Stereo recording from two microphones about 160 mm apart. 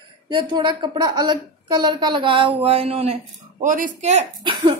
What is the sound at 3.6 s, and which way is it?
Speech, 55° right (ahead or behind).